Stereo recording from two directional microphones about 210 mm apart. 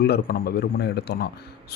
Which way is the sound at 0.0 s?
45° left (ahead or behind).